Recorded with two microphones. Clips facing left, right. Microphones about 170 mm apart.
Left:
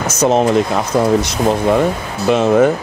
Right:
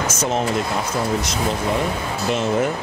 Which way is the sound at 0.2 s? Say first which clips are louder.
Left 11 dB; 70° left (ahead or behind).